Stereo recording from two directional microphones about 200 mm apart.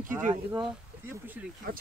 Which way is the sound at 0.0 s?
40° right (ahead or behind).